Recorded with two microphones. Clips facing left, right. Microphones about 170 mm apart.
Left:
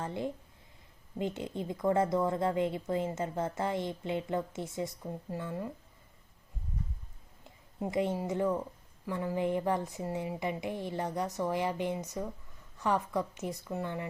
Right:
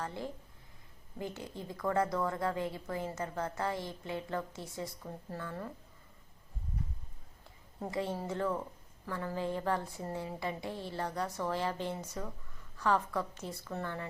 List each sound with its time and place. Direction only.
0.0 s a woman's voice: 20° left (ahead or behind)
7.4 s a woman's voice: 20° left (ahead or behind)